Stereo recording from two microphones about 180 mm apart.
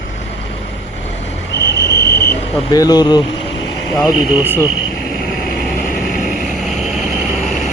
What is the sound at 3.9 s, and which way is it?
Speech, 5° left (ahead or behind).